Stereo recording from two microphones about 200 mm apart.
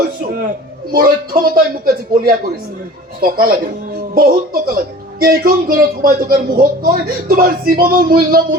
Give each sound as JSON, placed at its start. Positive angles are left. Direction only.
{"t": 0.9, "sound": "speech", "side_deg": -45}